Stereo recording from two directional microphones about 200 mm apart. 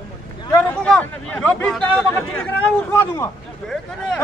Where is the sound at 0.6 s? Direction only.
5° left (ahead or behind).